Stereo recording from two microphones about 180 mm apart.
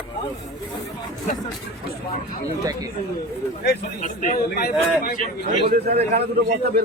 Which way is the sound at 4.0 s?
45° left (ahead or behind).